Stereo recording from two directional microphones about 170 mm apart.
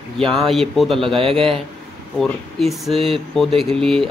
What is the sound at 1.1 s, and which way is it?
Speech, 30° right (ahead or behind).